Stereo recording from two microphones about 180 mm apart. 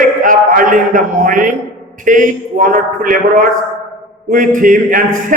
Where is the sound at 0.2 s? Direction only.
50° right (ahead or behind).